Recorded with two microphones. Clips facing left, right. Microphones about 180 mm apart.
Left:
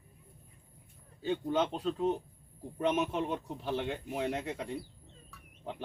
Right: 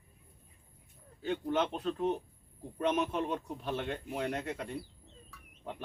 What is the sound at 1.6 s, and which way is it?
Speech, 10° left (ahead or behind).